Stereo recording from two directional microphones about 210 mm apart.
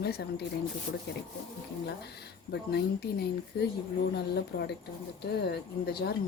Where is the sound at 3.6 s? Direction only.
50° left (ahead or behind).